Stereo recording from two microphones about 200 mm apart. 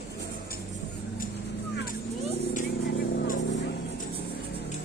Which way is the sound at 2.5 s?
45° left (ahead or behind).